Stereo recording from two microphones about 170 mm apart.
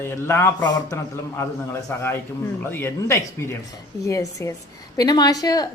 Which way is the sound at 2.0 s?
15° left (ahead or behind).